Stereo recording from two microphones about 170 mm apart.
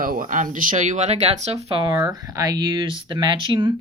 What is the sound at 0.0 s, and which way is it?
Speech, 55° right (ahead or behind).